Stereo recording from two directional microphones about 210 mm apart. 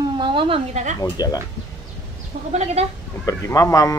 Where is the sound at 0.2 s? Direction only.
25° right (ahead or behind).